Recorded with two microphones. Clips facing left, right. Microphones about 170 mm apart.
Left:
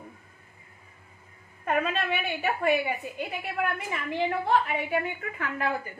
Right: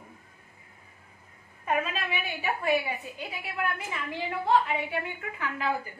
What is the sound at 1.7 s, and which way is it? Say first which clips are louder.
A woman's voice: left 3 dB; 55° left (ahead or behind).